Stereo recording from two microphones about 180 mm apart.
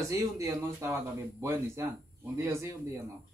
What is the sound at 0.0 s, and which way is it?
A man's voice, 15° right (ahead or behind).